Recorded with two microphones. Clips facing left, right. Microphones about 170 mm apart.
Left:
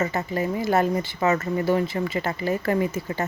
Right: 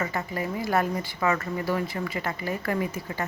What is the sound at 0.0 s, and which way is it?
Speech, 25° left (ahead or behind).